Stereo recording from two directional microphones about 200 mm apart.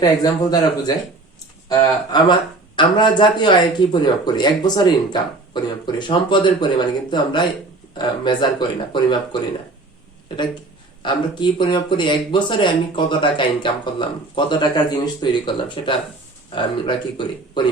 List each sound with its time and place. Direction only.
0.0 s speech: 20° left (ahead or behind)
11.0 s speech: 25° left (ahead or behind)